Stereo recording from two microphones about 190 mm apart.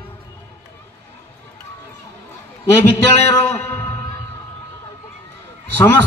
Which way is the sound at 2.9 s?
10° left (ahead or behind).